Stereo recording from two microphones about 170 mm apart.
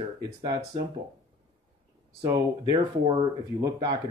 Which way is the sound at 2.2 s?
25° right (ahead or behind).